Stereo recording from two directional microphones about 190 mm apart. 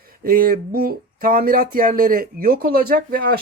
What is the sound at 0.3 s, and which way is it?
Speech, 50° right (ahead or behind).